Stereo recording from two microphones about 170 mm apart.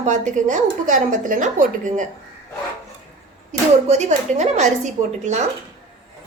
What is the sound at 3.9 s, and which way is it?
A woman's voice, 40° right (ahead or behind).